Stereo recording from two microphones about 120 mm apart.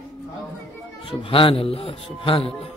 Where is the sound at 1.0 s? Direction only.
45° left (ahead or behind).